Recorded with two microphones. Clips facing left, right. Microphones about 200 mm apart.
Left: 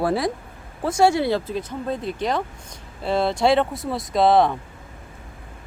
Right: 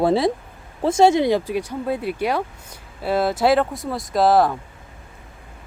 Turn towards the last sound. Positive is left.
turn(degrees=0)  # may be behind; listen again after turning